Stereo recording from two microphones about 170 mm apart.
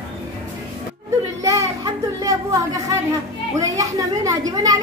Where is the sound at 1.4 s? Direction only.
20° right (ahead or behind).